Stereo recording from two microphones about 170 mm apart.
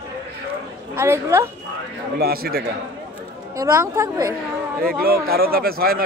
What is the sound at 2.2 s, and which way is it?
Speech, 65° right (ahead or behind).